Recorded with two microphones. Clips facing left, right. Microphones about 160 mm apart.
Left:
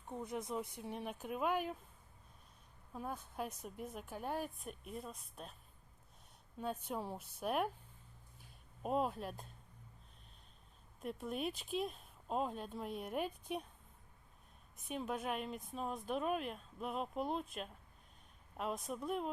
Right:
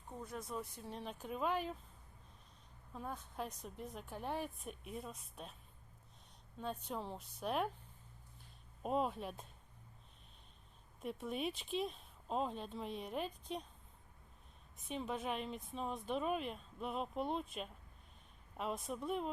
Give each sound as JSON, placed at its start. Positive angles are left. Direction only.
{"t": 0.1, "sound": "speech", "side_deg": 20}
{"t": 2.9, "sound": "speech", "side_deg": 5}
{"t": 6.6, "sound": "speech", "side_deg": 5}
{"t": 8.8, "sound": "speech", "side_deg": 0}
{"t": 11.0, "sound": "speech", "side_deg": 0}
{"t": 14.8, "sound": "speech", "side_deg": 0}